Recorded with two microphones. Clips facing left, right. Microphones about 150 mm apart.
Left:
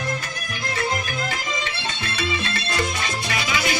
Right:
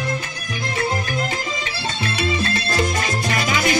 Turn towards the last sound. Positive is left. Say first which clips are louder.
# right 4 dB
turn(degrees=-50)  # may be behind; listen again after turning